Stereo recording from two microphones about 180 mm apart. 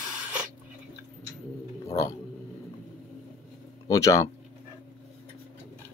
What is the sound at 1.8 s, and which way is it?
Speech, 20° left (ahead or behind).